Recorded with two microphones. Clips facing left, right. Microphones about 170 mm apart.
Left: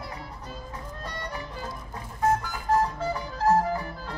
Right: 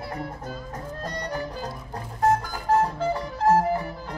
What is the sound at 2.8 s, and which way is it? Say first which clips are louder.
Music: right 3 dB; 25° right (ahead or behind).